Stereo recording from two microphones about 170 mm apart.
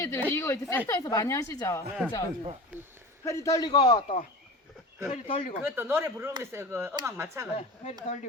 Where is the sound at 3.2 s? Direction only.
20° left (ahead or behind).